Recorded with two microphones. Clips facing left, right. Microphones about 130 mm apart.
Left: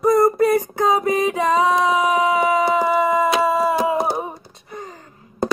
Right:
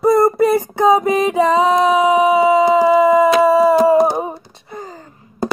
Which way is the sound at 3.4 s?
35° right (ahead or behind).